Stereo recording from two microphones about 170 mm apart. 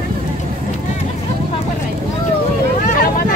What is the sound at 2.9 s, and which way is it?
Vehicle, 50° left (ahead or behind).